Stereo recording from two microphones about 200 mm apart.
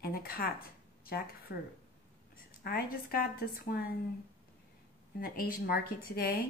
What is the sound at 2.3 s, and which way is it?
A woman's voice, 45° left (ahead or behind).